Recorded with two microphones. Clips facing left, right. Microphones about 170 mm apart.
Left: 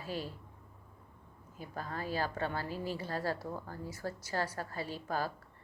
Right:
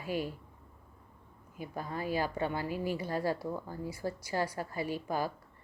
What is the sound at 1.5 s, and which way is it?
Speech, 15° right (ahead or behind).